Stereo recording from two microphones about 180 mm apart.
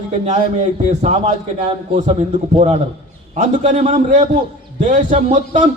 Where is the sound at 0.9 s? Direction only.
40° right (ahead or behind).